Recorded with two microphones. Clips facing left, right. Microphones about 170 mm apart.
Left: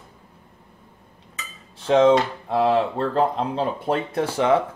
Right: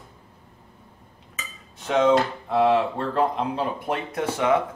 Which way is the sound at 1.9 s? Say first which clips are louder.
Left 3 dB; 30° left (ahead or behind).